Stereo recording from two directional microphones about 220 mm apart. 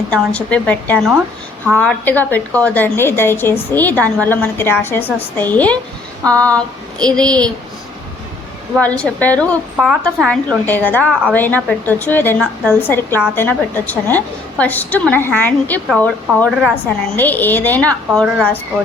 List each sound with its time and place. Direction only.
0.1 s a woman's voice: 5° left (ahead or behind)
8.8 s a woman's voice: 5° left (ahead or behind)